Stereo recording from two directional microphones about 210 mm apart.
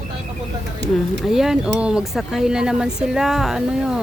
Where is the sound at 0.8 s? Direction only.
55° right (ahead or behind).